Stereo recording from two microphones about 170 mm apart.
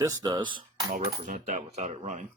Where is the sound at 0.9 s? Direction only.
50° right (ahead or behind).